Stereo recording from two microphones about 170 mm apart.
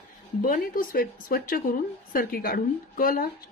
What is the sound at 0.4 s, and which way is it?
A woman's voice, 55° left (ahead or behind).